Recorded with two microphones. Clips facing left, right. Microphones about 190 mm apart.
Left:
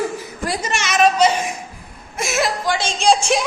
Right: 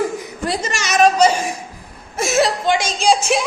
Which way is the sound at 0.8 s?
40° right (ahead or behind).